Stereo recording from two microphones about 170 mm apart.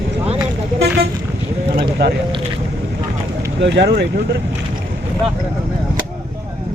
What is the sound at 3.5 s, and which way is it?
Speech, 90° right.